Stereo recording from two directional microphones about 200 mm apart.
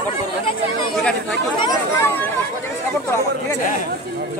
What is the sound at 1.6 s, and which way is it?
Speech, 20° left (ahead or behind).